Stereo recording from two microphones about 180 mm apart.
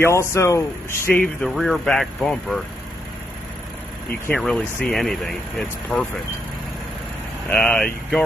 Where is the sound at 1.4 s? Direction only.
Centre (ahead or behind).